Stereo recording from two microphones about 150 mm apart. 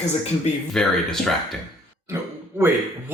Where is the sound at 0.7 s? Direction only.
5° left (ahead or behind).